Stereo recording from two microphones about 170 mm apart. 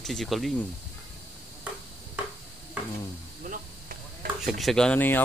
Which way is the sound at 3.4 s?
60° right (ahead or behind).